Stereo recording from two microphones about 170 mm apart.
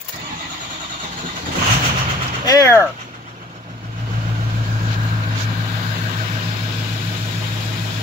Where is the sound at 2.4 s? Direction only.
20° left (ahead or behind).